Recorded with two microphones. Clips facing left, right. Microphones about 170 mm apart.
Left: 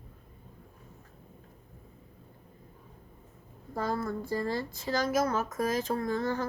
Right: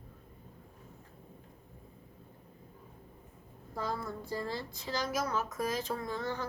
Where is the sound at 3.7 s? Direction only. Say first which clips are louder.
Left 5 dB; 50° left (ahead or behind).